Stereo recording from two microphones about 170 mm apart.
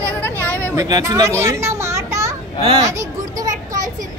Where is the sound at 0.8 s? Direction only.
20° right (ahead or behind).